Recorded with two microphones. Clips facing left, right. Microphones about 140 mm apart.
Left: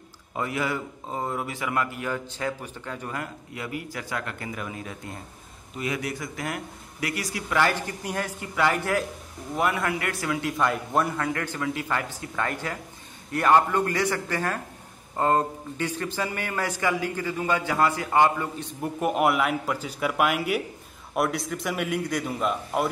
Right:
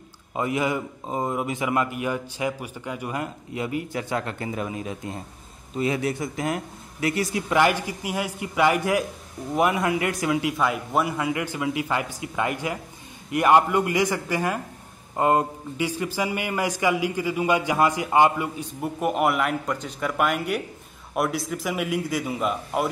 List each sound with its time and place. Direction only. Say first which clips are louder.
0.3 s a man's voice: right 4 dB; 20° right (ahead or behind)
10.6 s speech: right 1 dB; 5° right (ahead or behind)
18.6 s a man's voice: right 1 dB; 5° right (ahead or behind)